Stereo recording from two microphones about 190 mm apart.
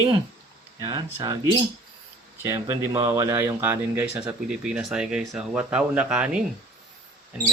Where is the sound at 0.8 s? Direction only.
20° right (ahead or behind).